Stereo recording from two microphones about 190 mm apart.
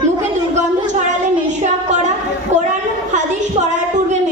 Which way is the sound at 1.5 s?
40° right (ahead or behind).